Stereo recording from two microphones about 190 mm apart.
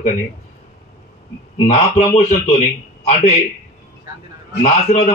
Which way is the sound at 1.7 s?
35° left (ahead or behind).